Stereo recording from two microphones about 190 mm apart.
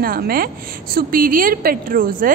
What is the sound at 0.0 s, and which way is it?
A woman's voice, 50° right (ahead or behind).